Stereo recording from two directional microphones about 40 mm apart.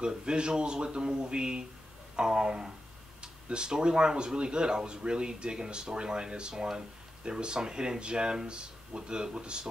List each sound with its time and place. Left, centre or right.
0.0 s speech: right